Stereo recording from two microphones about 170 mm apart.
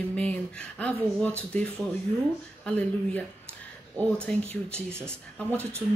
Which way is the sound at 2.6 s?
10° left (ahead or behind).